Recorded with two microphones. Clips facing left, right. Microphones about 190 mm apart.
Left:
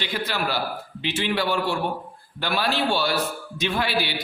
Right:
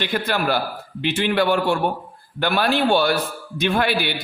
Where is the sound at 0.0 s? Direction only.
55° right (ahead or behind).